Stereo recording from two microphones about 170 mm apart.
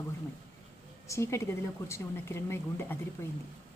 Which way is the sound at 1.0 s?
15° left (ahead or behind).